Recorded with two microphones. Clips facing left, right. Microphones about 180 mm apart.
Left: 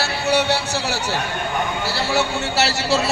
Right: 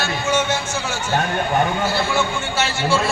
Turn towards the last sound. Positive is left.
turn(degrees=40)  # may be behind; listen again after turning